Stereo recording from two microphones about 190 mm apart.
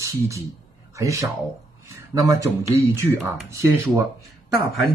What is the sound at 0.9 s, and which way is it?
Speech, 15° right (ahead or behind).